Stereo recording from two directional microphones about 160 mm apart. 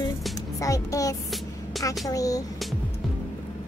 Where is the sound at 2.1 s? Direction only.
20° left (ahead or behind).